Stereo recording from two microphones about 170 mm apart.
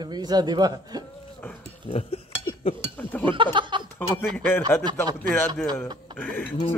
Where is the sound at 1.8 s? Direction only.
35° left (ahead or behind).